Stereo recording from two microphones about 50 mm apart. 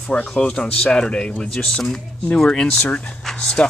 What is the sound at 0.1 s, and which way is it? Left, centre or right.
Speech, left.